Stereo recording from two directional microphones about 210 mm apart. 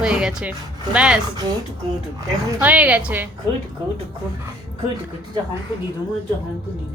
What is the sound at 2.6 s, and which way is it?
Speech, 5° right (ahead or behind).